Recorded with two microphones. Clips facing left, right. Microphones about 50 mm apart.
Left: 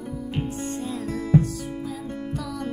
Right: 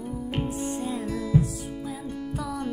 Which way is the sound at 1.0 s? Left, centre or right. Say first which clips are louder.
Left 5 dB; left.